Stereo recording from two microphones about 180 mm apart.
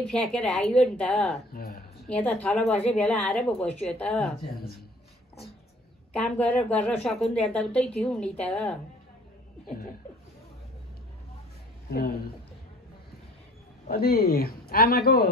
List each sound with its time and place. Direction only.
0.0 s speech: 5° left (ahead or behind)
1.5 s speech: 60° left (ahead or behind)
2.0 s a woman's voice: 5° left (ahead or behind)
6.1 s speech: 5° left (ahead or behind)
11.9 s a man's voice: 55° left (ahead or behind)
13.8 s a man's voice: 55° left (ahead or behind)